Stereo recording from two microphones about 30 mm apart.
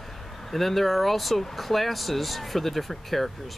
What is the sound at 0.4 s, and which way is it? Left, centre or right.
Speech, centre.